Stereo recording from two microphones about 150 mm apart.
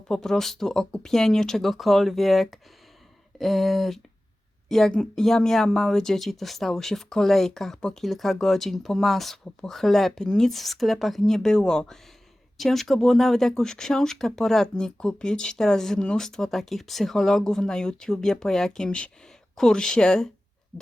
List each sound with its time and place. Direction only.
0.1 s speech: 5° left (ahead or behind)